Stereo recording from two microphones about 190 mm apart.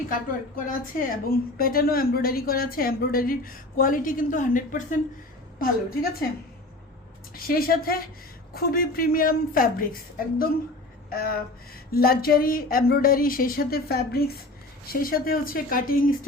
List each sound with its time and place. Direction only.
0.1 s a woman's voice: 45° left (ahead or behind)
7.3 s a woman's voice: 50° left (ahead or behind)